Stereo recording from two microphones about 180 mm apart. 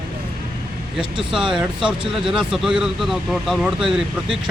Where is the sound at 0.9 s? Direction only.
5° right (ahead or behind).